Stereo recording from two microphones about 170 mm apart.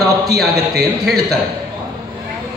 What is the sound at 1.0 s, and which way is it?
Speech, centre (ahead or behind).